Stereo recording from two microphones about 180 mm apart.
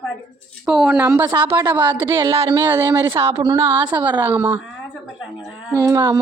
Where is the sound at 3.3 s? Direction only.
25° right (ahead or behind); by 4.6 s 10° right (ahead or behind).